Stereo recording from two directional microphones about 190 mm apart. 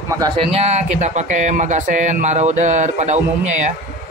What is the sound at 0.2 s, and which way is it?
Speech, 30° right (ahead or behind).